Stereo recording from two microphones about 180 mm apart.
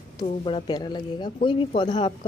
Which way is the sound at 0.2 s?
25° left (ahead or behind).